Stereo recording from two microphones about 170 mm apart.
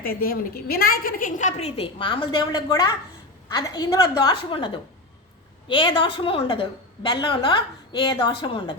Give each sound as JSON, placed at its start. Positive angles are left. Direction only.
{"t": 0.0, "sound": "a woman's voice", "side_deg": 60}